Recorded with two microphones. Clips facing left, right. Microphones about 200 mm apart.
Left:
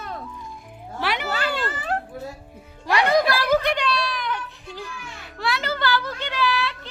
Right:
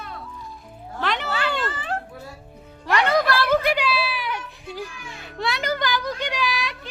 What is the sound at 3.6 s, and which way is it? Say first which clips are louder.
Music: right 1 dB; 5° right (ahead or behind).